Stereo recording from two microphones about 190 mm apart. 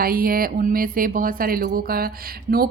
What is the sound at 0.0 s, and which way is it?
Speech, 50° right (ahead or behind).